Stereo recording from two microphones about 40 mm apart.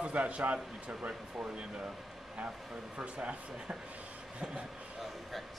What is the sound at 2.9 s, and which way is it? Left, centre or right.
Speech, right.